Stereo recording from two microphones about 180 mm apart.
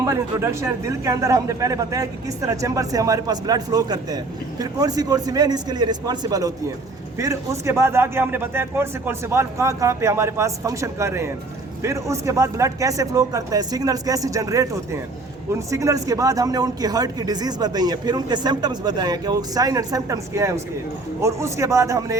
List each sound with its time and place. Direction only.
0.0 s a man's voice: 15° right (ahead or behind)